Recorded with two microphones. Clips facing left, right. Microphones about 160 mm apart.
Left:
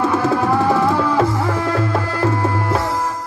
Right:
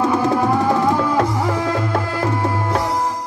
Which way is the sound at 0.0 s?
15° right (ahead or behind).